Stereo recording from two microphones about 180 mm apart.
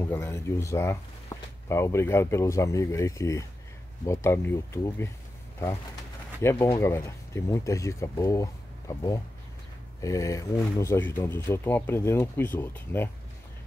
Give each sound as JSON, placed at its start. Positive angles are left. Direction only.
{"t": 0.0, "sound": "speech", "side_deg": 10}
{"t": 6.8, "sound": "speech", "side_deg": 15}